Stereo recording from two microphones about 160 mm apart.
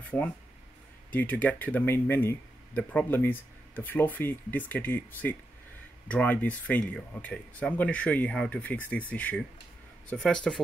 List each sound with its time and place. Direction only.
0.1 s speech: 10° left (ahead or behind)